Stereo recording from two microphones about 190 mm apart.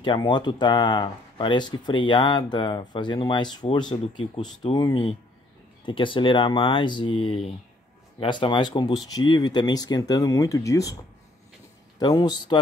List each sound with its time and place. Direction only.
0.0 s speech: 25° left (ahead or behind)
12.0 s speech: 20° left (ahead or behind)